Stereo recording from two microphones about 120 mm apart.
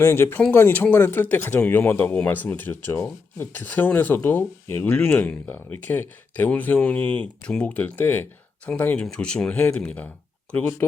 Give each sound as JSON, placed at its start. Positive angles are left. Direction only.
{"t": 0.0, "sound": "speech", "side_deg": 20}